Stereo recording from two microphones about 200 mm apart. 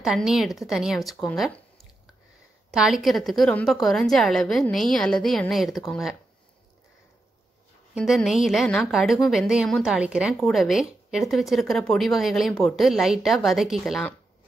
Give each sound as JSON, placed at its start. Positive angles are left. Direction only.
{"t": 0.0, "sound": "a woman's voice", "side_deg": 0}
{"t": 2.7, "sound": "a woman's voice", "side_deg": 0}
{"t": 7.9, "sound": "a woman's voice", "side_deg": 0}